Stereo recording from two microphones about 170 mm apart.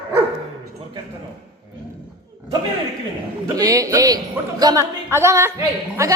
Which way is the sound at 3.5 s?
20° right (ahead or behind).